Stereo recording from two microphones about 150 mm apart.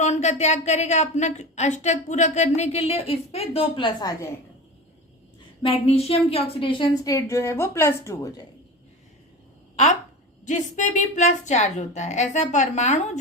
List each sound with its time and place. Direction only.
0.0 s a woman's voice: 50° left (ahead or behind); by 4.1 s 30° left (ahead or behind)
5.6 s a woman's voice: 40° left (ahead or behind); by 8.4 s 20° left (ahead or behind)
10.4 s a woman's voice: 55° left (ahead or behind)